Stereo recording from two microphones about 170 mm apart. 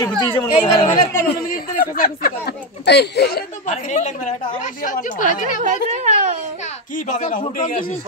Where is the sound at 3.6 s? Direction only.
45° left (ahead or behind).